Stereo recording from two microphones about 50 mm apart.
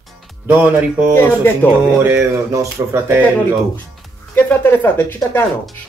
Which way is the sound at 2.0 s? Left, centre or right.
Right.